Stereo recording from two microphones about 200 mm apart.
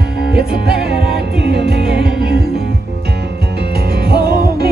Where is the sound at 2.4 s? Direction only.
55° right (ahead or behind).